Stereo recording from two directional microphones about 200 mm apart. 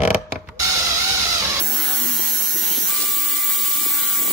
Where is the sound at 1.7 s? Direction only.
Centre (ahead or behind).